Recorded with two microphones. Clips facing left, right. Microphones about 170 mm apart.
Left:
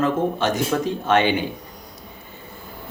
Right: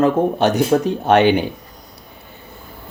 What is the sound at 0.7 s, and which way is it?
Speech, 35° right (ahead or behind).